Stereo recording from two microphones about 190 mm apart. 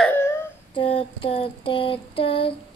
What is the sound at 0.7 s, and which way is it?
A woman's voice, 30° left (ahead or behind).